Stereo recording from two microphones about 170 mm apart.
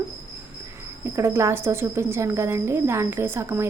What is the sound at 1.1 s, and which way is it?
Speech, 15° right (ahead or behind).